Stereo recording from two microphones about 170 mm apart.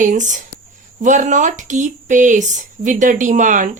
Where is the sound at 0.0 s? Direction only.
45° right (ahead or behind).